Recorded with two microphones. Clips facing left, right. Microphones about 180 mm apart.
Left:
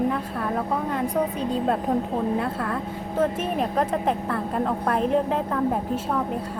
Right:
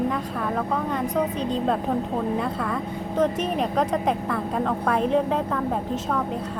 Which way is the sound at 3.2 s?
5° left (ahead or behind).